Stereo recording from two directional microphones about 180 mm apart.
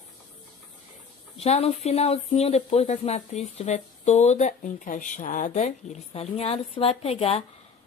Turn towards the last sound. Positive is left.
turn(degrees=35)  # may be behind; listen again after turning